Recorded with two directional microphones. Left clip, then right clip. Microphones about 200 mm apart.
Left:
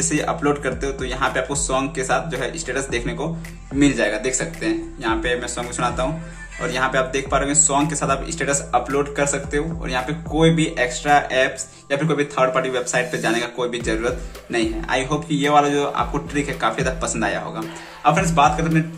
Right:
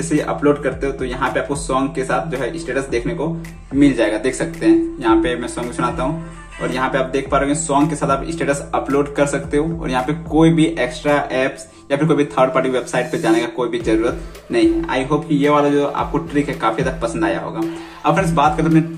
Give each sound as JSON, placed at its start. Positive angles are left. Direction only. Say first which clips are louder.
{"t": 0.1, "sound": "a man's voice", "louder": "right 6 dB", "side_deg": 15}
{"t": 3.8, "sound": "a man's voice", "louder": "right 3 dB", "side_deg": 5}